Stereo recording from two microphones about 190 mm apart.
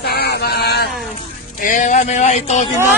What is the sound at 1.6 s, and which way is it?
Speech, 45° left (ahead or behind).